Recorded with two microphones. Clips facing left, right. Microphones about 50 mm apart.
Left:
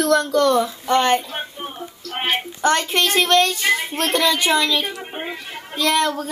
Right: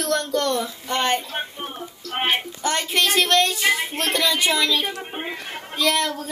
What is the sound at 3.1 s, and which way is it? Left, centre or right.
Speech, centre.